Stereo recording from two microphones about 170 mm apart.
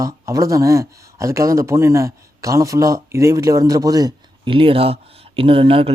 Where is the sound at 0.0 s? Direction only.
20° right (ahead or behind).